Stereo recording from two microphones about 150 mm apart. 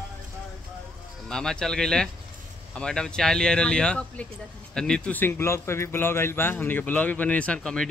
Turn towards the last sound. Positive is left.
turn(degrees=5)  # may be behind; listen again after turning